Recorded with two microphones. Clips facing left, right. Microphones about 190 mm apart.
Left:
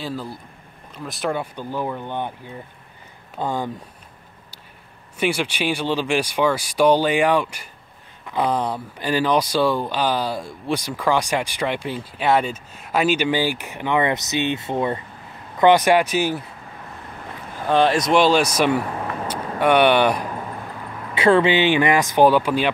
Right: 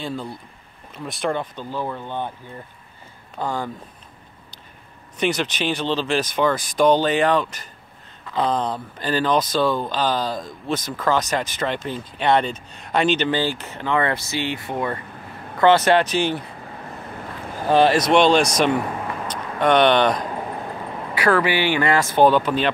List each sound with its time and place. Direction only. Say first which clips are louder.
0.0 s speech: even; 5° left (ahead or behind)
3.3 s speech: left 1 dB; 15° left (ahead or behind)
5.2 s speech: even; 10° left (ahead or behind)
17.6 s speech: right 1 dB; centre (ahead or behind)
21.1 s speech: left 4 dB; 25° left (ahead or behind)